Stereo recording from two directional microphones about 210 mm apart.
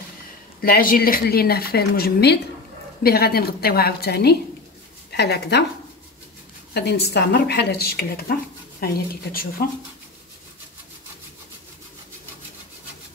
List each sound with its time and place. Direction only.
0.6 s speech: 45° left (ahead or behind)
6.7 s speech: 50° left (ahead or behind)